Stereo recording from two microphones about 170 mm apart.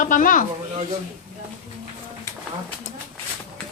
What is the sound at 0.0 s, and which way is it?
Speech, 50° left (ahead or behind).